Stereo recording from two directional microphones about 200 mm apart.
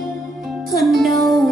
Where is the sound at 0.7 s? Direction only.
Centre (ahead or behind).